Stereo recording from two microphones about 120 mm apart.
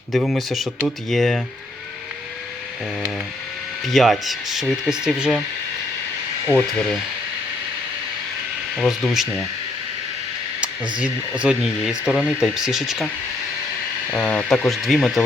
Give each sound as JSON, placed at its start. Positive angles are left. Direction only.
{"t": 0.1, "sound": "speech", "side_deg": 0}
{"t": 3.8, "sound": "speech", "side_deg": 0}
{"t": 6.5, "sound": "speech", "side_deg": 15}
{"t": 8.7, "sound": "speech", "side_deg": 0}
{"t": 10.9, "sound": "speech", "side_deg": -10}
{"t": 14.1, "sound": "speech", "side_deg": 10}